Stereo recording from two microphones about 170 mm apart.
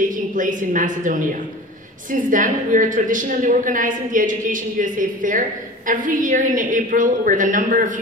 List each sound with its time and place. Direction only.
0.1 s a woman's voice: 50° right (ahead or behind)